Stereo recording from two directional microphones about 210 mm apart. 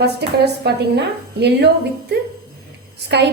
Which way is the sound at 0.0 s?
50° right (ahead or behind).